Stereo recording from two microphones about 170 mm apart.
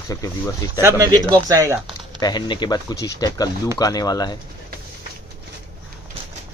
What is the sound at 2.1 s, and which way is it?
Speech, 25° left (ahead or behind).